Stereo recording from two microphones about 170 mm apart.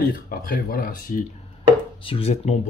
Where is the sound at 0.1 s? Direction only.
60° left (ahead or behind).